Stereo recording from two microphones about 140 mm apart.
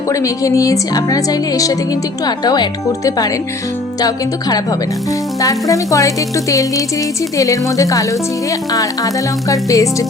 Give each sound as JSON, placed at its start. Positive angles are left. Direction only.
{"t": 0.1, "sound": "speech", "side_deg": 25}
{"t": 9.5, "sound": "speech", "side_deg": 25}